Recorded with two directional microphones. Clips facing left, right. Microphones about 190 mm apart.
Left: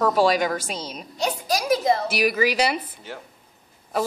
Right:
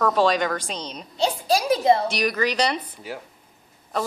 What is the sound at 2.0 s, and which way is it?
Speech, 5° left (ahead or behind).